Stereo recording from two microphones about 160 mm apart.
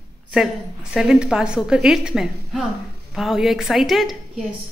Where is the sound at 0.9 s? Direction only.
5° right (ahead or behind).